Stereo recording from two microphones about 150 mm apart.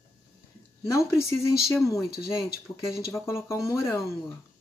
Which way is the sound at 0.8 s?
20° left (ahead or behind).